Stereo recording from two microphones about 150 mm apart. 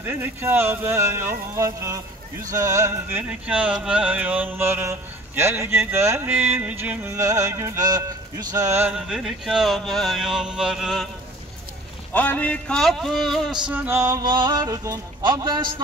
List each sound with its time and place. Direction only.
0.0 s a sound: 15° right (ahead or behind)
8.9 s speech: 5° right (ahead or behind)
12.1 s speech: 10° left (ahead or behind)
13.7 s music: 15° right (ahead or behind); by 15.8 s 30° right (ahead or behind)